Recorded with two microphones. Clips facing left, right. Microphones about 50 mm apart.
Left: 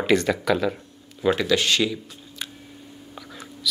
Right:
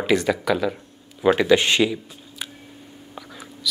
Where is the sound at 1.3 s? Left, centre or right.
Right.